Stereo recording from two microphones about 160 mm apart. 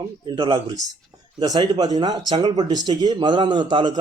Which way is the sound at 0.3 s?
30° right (ahead or behind).